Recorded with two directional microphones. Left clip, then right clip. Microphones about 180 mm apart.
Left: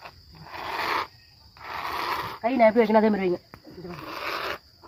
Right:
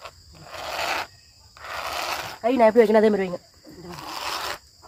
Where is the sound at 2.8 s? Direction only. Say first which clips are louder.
Right 3 dB; 40° right (ahead or behind).